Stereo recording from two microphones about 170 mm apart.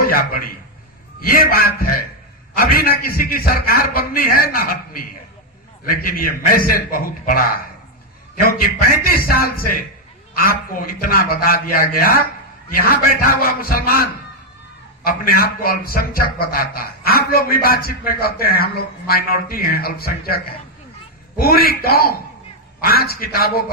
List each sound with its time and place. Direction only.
0.0 s a man's voice: 55° left (ahead or behind)